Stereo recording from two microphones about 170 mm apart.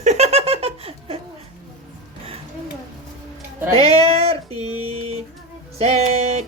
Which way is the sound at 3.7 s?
35° right (ahead or behind).